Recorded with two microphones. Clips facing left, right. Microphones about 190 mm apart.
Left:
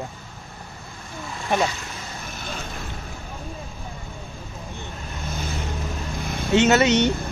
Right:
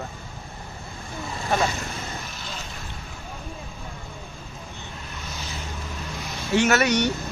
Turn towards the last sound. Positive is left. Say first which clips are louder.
# left 3 dB
turn(degrees=25)  # may be behind; listen again after turning